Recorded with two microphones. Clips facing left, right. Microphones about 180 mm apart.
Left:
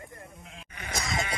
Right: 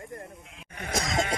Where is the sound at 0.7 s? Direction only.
45° right (ahead or behind).